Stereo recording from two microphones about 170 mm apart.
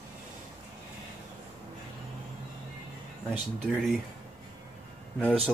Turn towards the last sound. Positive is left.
turn(degrees=5)  # may be behind; listen again after turning